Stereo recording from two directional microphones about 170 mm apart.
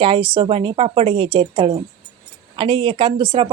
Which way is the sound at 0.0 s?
30° right (ahead or behind).